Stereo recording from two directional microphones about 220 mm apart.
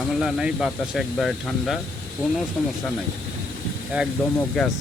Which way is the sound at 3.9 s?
5° right (ahead or behind).